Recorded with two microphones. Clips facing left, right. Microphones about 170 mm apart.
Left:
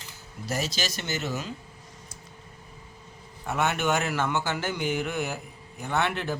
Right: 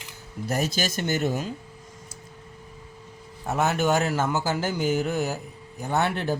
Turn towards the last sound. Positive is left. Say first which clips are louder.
# right 3 dB
turn(degrees=-40)  # may be behind; listen again after turning